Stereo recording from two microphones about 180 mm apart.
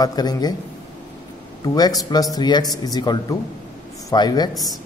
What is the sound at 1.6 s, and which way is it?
A man's voice, 20° left (ahead or behind).